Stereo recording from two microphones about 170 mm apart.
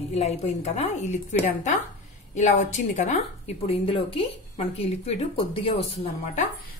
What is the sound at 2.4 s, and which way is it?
A woman's voice, 45° left (ahead or behind).